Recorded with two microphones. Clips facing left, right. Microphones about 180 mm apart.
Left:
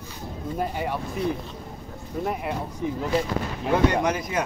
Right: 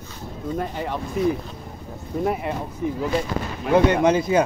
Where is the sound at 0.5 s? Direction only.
10° left (ahead or behind).